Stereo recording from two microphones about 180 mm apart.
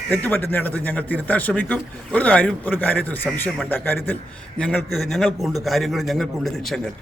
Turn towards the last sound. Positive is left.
turn(degrees=0)  # may be behind; listen again after turning